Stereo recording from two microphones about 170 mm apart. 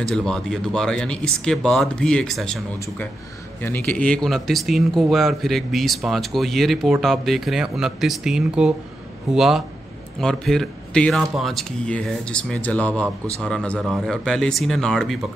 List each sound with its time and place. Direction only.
0.0 s speech: 5° left (ahead or behind)